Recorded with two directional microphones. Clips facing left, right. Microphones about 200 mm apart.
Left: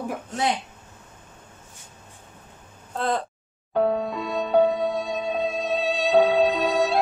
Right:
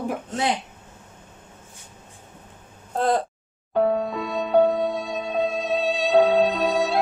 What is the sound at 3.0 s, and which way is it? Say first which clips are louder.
Speech: right 4 dB; 40° right (ahead or behind).